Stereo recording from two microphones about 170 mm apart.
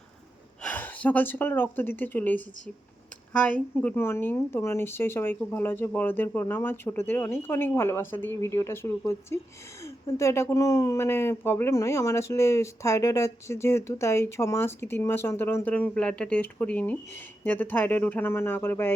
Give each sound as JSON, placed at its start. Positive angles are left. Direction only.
{"t": 0.6, "sound": "speech", "side_deg": 10}